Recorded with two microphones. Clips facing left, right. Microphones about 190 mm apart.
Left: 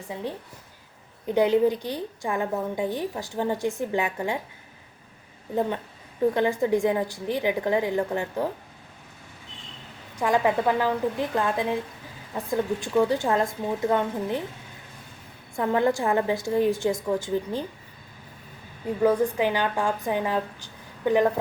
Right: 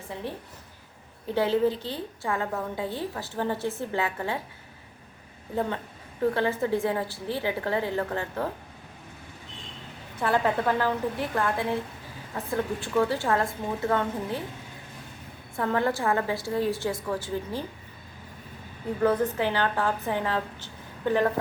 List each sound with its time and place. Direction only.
1.3 s a woman's voice: 15° left (ahead or behind)
5.5 s a woman's voice: 15° left (ahead or behind)
10.2 s a woman's voice: 15° left (ahead or behind)
15.5 s a woman's voice: 20° left (ahead or behind)
19.0 s a woman's voice: 10° left (ahead or behind)